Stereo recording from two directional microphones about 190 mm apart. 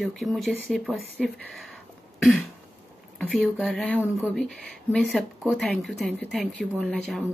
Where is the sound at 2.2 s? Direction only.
5° left (ahead or behind).